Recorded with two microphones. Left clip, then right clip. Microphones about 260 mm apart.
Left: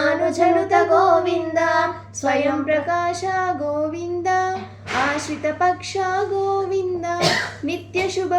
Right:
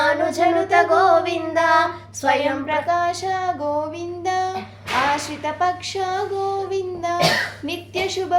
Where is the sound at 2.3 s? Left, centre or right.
Centre.